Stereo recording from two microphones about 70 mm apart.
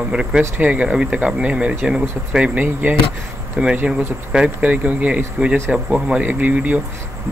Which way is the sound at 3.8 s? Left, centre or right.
Centre.